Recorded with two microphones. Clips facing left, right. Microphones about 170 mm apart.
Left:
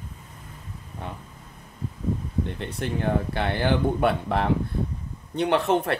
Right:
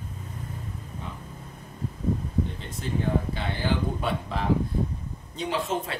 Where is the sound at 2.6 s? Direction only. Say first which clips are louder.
Left 2 dB; 65° left (ahead or behind).